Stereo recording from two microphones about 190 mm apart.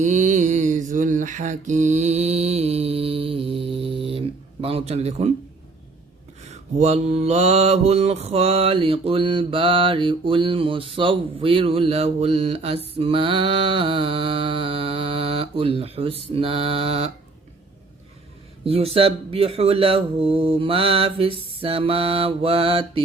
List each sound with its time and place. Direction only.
0.0 s mantra: 40° right (ahead or behind)
6.5 s mantra: 35° right (ahead or behind)
18.6 s mantra: 30° right (ahead or behind)